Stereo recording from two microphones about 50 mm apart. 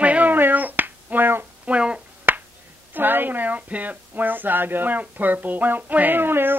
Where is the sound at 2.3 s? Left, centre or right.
Right.